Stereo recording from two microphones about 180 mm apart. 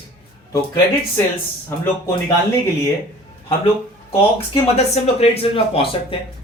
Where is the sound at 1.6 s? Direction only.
10° left (ahead or behind).